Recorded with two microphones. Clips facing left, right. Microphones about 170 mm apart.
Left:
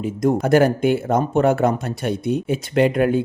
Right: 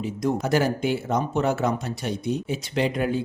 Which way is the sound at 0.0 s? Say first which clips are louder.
Left 6 dB; 50° left (ahead or behind).